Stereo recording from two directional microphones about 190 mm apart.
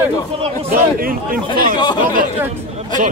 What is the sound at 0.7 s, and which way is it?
A man's voice, 50° right (ahead or behind).